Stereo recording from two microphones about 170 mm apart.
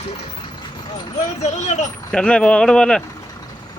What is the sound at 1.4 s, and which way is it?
Speech, 45° left (ahead or behind).